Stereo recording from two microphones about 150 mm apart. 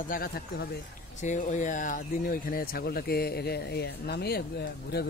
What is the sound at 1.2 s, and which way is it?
Speech, 55° left (ahead or behind).